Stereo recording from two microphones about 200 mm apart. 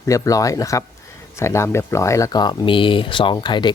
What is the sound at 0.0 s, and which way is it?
Speech, 15° left (ahead or behind).